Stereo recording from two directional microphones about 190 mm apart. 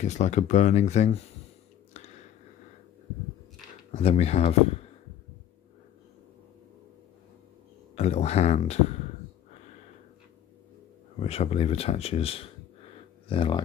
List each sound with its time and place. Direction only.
0.0 s speech: 35° left (ahead or behind)
2.0 s chewing: 35° left (ahead or behind)
3.9 s speech: 30° left (ahead or behind)
7.9 s speech: 35° left (ahead or behind)
11.1 s speech: 35° left (ahead or behind)